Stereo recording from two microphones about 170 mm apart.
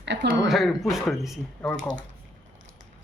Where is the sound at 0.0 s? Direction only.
90° right.